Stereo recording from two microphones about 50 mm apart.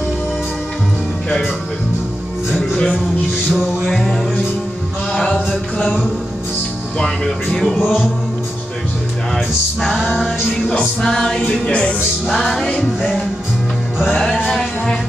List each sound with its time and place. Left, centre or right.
2.7 s music: centre
3.8 s music: centre
7.5 s music: centre
9.3 s music: centre
9.9 s music: centre
11.0 s music: centre
11.6 s speech: left
12.6 s music: centre
14.1 s music: centre